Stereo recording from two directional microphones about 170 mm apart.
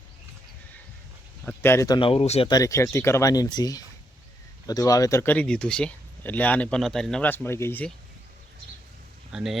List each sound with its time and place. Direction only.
1.5 s speech: 15° left (ahead or behind)
2.0 s speech: 35° left (ahead or behind)
2.5 s speech: 20° left (ahead or behind)
9.3 s speech: centre (ahead or behind)